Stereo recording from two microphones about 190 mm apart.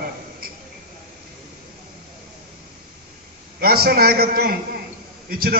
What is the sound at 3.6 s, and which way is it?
A man's voice, 55° right (ahead or behind).